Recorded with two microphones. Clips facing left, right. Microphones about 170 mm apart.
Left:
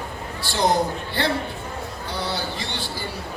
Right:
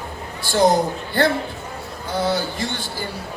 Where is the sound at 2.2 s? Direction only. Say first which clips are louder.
Right 7 dB; 50° right (ahead or behind).